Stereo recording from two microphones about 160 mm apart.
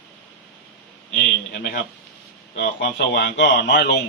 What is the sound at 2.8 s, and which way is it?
A man's voice, 90° left.